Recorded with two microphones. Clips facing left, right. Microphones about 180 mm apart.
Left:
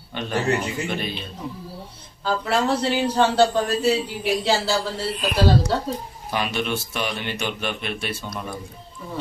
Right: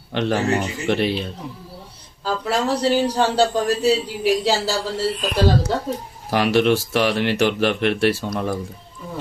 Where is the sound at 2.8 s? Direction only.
10° right (ahead or behind).